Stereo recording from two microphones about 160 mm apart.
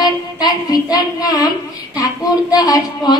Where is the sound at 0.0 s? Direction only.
25° left (ahead or behind).